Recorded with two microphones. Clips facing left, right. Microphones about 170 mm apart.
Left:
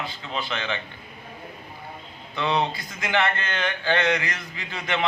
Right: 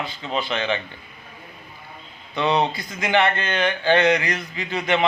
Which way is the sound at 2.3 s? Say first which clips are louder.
Right 4 dB; 20° right (ahead or behind).